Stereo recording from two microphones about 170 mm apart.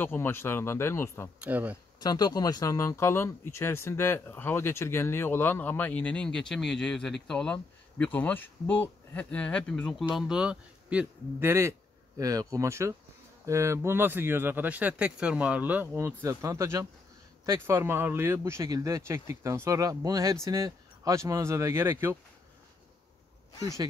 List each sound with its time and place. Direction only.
0.0 s speech: 10° left (ahead or behind)
1.4 s speech: 10° right (ahead or behind)
2.0 s speech: 25° left (ahead or behind); by 22.1 s 15° right (ahead or behind)